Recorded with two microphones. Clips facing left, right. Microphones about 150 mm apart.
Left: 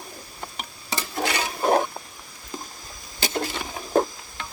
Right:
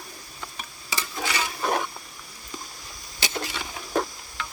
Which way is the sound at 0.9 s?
55° left (ahead or behind).